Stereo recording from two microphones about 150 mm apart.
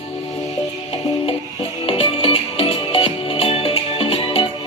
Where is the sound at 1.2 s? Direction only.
40° left (ahead or behind).